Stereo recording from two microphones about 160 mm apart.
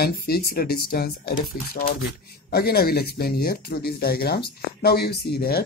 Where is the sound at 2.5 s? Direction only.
75° left (ahead or behind).